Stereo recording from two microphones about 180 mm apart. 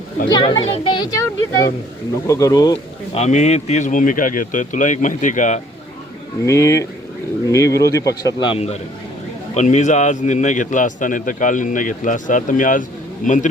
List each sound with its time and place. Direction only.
0.3 s speech: 25° left (ahead or behind)
2.2 s speech: 15° left (ahead or behind)
3.2 s a man's voice: 40° left (ahead or behind)
6.4 s a man's voice: 15° left (ahead or behind); by 13.5 s 45° left (ahead or behind)